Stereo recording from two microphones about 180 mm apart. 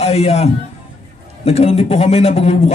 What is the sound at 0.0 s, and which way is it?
A man's voice, 35° left (ahead or behind).